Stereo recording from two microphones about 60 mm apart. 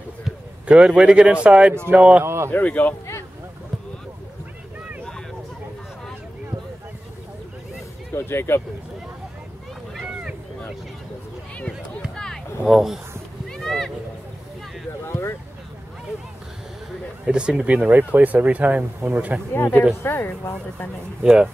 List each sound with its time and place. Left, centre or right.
0.7 s speech: centre
2.2 s speech: right
2.5 s speech: left
8.1 s speech: left
12.6 s speech: centre
13.5 s a sound: centre
15.0 s speech: left
17.3 s speech: centre
17.8 s speech: right
19.5 s speech: left
21.2 s speech: centre